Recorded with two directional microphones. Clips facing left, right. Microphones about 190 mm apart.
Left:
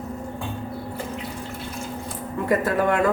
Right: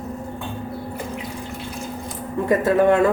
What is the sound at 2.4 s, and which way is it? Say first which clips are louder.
Speech: right 5 dB; 25° right (ahead or behind).